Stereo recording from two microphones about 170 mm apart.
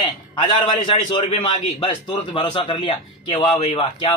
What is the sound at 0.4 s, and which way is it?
A man's voice, 25° left (ahead or behind).